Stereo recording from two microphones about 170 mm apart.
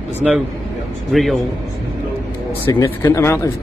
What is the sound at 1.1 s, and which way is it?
Speech, centre (ahead or behind).